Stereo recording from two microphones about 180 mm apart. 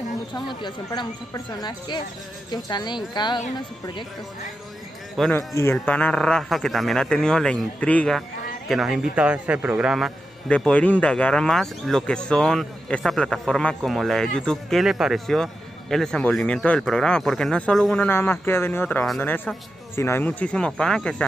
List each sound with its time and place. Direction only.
0.3 s speech: 25° left (ahead or behind)
5.1 s speech: centre (ahead or behind)
5.5 s a man's voice: 15° left (ahead or behind)